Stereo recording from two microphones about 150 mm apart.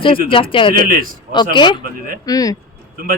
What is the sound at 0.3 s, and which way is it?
A woman's voice, 35° left (ahead or behind).